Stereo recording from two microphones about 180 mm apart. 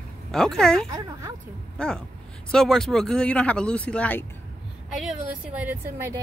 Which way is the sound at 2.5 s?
5° left (ahead or behind).